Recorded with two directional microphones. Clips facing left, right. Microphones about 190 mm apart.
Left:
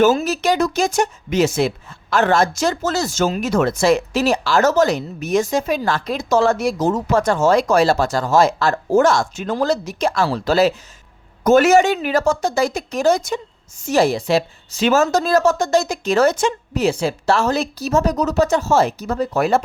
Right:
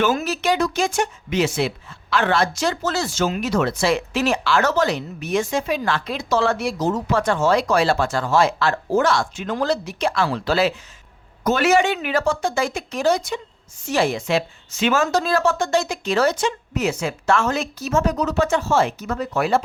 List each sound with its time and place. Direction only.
0.3 s a woman's voice: 40° left (ahead or behind)
16.7 s a woman's voice: 30° left (ahead or behind)